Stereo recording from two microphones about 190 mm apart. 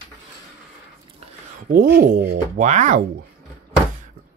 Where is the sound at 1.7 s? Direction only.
50° right (ahead or behind).